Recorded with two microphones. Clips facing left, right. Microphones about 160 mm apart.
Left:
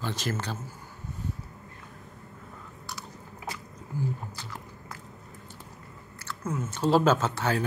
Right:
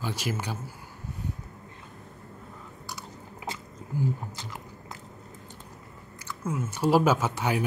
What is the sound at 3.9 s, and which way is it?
Speech, 15° right (ahead or behind).